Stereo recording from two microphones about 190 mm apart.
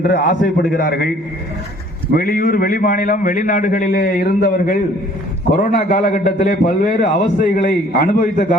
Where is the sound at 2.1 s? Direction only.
50° left (ahead or behind).